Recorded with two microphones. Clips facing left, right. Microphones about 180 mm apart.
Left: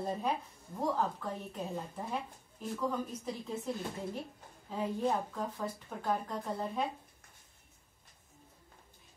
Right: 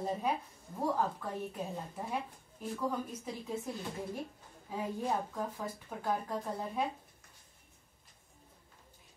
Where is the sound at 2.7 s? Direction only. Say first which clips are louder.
Left 1 dB; 10° right (ahead or behind).